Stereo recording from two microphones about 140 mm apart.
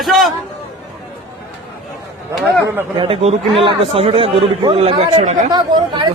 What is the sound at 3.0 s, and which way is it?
A man's voice, 40° right (ahead or behind).